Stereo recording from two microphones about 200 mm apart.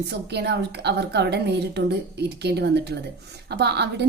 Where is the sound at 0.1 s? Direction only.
55° right (ahead or behind).